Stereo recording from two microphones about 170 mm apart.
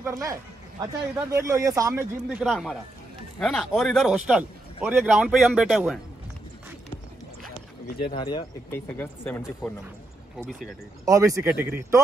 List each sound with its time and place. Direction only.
0.0 s a man's voice: 20° right (ahead or behind)
2.2 s a man's voice: 5° right (ahead or behind)
7.8 s speech: 65° left (ahead or behind)
8.2 s speech: 30° left (ahead or behind)
8.7 s speech: 10° left (ahead or behind)
11.1 s a man's voice: 20° right (ahead or behind)